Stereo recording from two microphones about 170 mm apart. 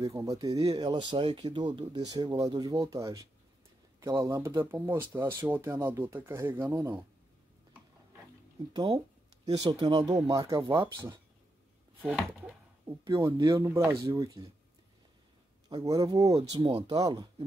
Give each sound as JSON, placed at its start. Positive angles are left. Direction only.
{"t": 0.0, "sound": "speech", "side_deg": -20}
{"t": 8.7, "sound": "speech", "side_deg": -25}
{"t": 12.0, "sound": "a sound", "side_deg": -5}
{"t": 13.0, "sound": "speech", "side_deg": -20}
{"t": 15.7, "sound": "speech", "side_deg": -20}